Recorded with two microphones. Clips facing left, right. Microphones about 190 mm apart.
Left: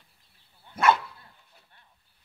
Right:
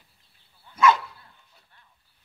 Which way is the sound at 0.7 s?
55° left (ahead or behind).